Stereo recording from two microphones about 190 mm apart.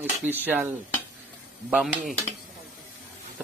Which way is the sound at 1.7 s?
Centre (ahead or behind).